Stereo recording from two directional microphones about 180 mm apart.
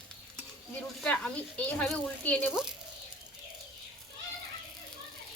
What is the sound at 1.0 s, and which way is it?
A woman's voice, 5° left (ahead or behind).